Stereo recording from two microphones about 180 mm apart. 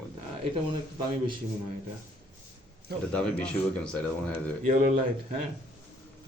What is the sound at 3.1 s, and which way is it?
Speech, 5° left (ahead or behind).